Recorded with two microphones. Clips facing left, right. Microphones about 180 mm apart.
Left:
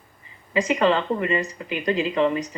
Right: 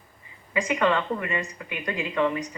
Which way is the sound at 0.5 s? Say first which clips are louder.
Left 3 dB; 25° left (ahead or behind).